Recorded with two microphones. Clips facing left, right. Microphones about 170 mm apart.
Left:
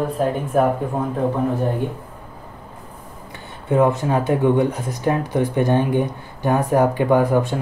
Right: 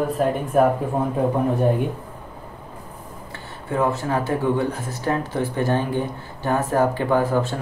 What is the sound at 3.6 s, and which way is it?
Speech, 20° left (ahead or behind).